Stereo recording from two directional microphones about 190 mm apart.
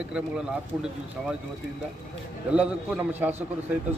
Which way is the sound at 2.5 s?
5° right (ahead or behind).